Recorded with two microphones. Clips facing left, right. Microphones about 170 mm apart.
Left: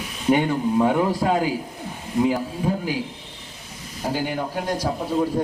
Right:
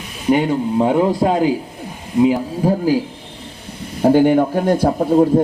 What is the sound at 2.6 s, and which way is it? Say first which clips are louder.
Speech: right 10 dB; 40° right (ahead or behind).